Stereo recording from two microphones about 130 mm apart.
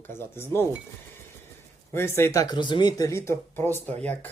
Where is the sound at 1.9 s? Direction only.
20° left (ahead or behind).